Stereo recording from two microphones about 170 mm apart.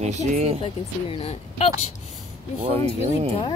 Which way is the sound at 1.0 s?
35° left (ahead or behind).